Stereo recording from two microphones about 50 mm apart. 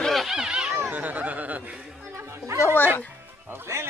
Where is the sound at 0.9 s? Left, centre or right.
Right.